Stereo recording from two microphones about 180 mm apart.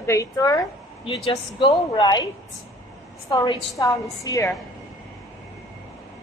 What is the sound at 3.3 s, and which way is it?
A woman's voice, 20° left (ahead or behind).